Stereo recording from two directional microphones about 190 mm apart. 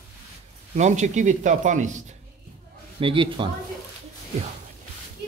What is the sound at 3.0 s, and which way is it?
Speech, 25° right (ahead or behind).